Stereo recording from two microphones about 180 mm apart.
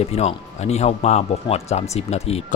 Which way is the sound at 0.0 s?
35° left (ahead or behind).